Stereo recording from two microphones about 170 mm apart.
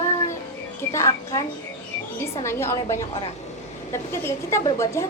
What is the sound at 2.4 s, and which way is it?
A woman's voice, 15° left (ahead or behind).